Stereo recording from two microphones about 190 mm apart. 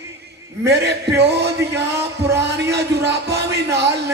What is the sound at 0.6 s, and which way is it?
A man's voice, 60° right (ahead or behind).